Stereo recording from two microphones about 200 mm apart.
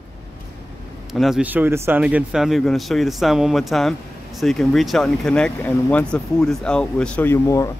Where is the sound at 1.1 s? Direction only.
Centre (ahead or behind); by 7.7 s 15° left (ahead or behind).